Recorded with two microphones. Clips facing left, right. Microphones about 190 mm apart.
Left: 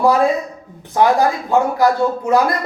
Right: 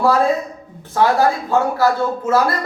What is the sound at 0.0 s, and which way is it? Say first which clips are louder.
Speech: left 1 dB; 15° left (ahead or behind).